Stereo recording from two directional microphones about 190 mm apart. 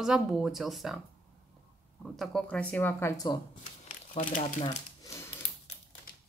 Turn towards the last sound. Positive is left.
turn(degrees=45)  # may be behind; listen again after turning